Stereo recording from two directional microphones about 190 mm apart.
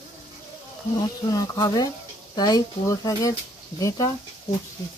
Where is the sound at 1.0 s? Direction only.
20° left (ahead or behind).